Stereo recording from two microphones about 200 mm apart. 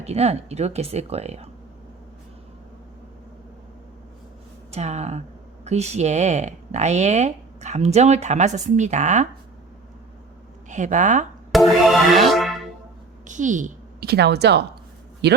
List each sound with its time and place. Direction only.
0.0 s speech: 30° right (ahead or behind)
4.7 s speech: 35° right (ahead or behind)
10.7 s speech: 35° right (ahead or behind)
11.5 s music: centre (ahead or behind)
13.2 s a woman's voice: 40° right (ahead or behind); by 15.4 s 55° right (ahead or behind)